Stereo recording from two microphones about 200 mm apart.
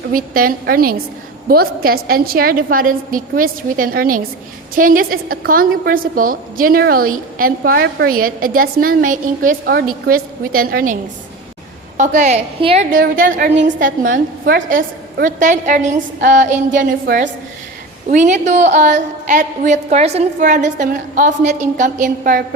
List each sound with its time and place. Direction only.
0.1 s a woman's voice: 45° right (ahead or behind)
11.9 s a woman's voice: 35° right (ahead or behind)